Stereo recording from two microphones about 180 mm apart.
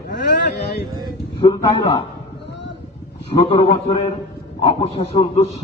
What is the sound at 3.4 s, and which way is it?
A man's voice, 30° left (ahead or behind).